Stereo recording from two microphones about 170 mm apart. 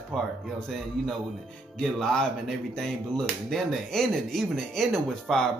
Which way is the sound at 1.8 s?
5° left (ahead or behind).